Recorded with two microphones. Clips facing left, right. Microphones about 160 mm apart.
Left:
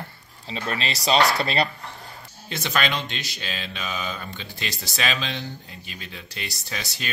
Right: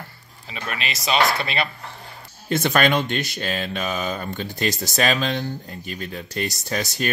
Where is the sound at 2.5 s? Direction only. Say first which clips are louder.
Right 7 dB; 50° right (ahead or behind).